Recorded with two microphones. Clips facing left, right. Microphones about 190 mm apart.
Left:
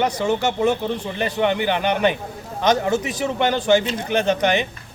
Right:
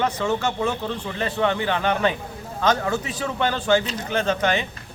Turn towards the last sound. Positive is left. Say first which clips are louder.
# left 3 dB
turn(degrees=20)  # may be behind; listen again after turning